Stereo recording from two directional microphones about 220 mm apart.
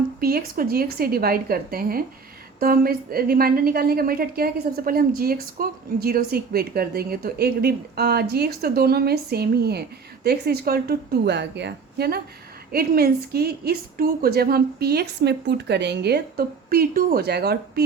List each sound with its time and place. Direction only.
0.2 s a woman's voice: 45° right (ahead or behind)